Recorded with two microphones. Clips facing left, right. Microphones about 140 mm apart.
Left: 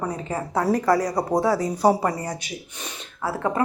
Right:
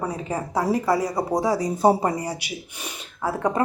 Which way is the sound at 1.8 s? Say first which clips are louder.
Right 3 dB; 25° right (ahead or behind).